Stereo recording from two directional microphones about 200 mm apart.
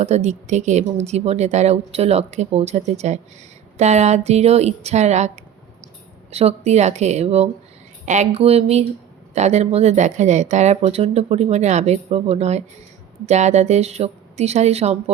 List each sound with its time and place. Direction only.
0.0 s a woman's voice: 35° right (ahead or behind)
6.3 s a woman's voice: 30° right (ahead or behind)